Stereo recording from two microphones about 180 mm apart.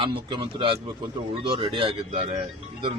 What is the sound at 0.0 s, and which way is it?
A man's voice, 30° right (ahead or behind).